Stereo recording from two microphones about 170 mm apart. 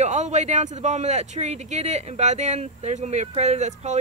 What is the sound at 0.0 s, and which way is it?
Speech, 45° right (ahead or behind).